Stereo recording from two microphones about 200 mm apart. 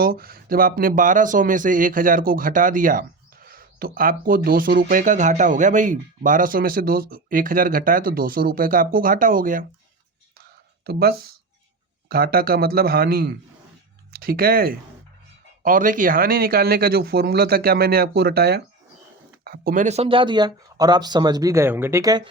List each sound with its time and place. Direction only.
0.0 s speech: 50° right (ahead or behind)
10.8 s speech: 50° right (ahead or behind); by 22.3 s 20° right (ahead or behind)